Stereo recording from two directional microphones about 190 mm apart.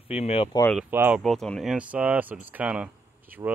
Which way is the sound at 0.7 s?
10° right (ahead or behind).